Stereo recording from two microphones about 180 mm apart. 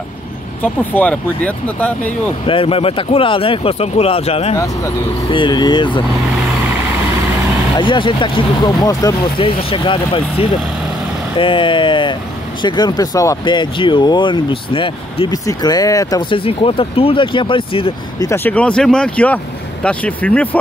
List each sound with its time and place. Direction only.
0.6 s speech: 10° left (ahead or behind)
2.4 s speech: 30° left (ahead or behind)
4.6 s speech: 20° left (ahead or behind)
7.7 s speech: 25° left (ahead or behind)
18.2 s speech: 10° left (ahead or behind)